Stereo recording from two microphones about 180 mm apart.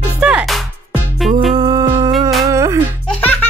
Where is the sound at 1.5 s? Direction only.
20° right (ahead or behind).